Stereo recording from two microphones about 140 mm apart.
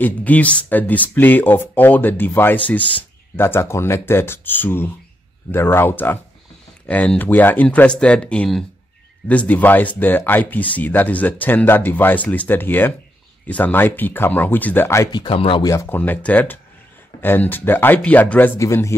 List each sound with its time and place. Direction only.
0.0 s speech: 10° left (ahead or behind)
15.1 s speech: 40° left (ahead or behind)
15.6 s speech: 20° left (ahead or behind)
16.0 s speech: 10° left (ahead or behind)